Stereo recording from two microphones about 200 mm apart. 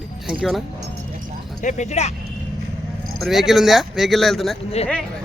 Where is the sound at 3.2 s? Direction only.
Centre (ahead or behind).